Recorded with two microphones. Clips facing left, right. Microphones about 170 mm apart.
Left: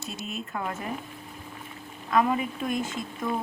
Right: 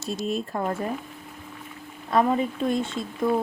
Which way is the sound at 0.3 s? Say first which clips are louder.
Right 6 dB; 35° right (ahead or behind).